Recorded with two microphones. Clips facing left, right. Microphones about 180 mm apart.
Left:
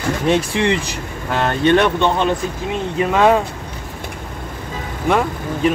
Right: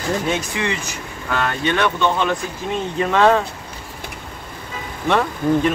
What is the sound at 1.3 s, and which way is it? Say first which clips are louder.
Speech: left 6 dB; 25° left (ahead or behind).